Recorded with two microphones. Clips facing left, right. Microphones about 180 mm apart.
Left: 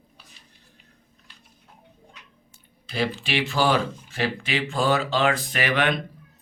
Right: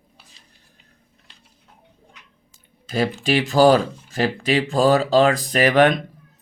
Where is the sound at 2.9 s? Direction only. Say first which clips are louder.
Right 6 dB; 40° right (ahead or behind).